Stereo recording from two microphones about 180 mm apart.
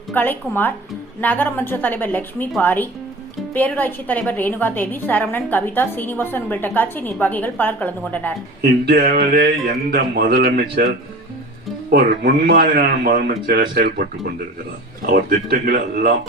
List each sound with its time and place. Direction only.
0.1 s a woman's voice: 10° left (ahead or behind)
8.6 s speech: 65° right (ahead or behind)
11.9 s speech: 60° right (ahead or behind)